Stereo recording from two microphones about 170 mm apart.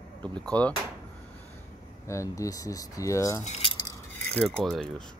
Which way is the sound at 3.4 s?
40° left (ahead or behind).